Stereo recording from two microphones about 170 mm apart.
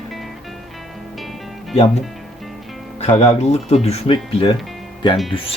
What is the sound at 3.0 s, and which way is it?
Speech, 40° left (ahead or behind).